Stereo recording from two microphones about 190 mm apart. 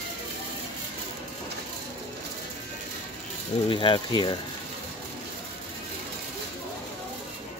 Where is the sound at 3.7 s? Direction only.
25° left (ahead or behind).